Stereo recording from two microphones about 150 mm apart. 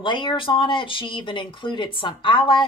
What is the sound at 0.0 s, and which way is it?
Speech, 30° left (ahead or behind).